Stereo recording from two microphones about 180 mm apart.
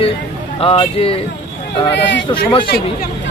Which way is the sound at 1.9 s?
85° left.